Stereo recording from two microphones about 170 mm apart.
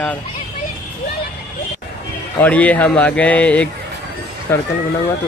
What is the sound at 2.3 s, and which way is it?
Speech, 10° left (ahead or behind).